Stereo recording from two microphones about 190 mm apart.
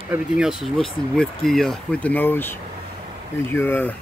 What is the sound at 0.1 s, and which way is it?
Speech, 5° right (ahead or behind).